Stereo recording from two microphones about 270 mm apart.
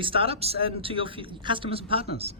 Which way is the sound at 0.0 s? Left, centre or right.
Centre.